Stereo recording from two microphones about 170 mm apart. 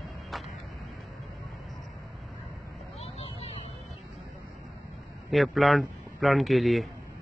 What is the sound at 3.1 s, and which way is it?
Vehicle, 35° left (ahead or behind).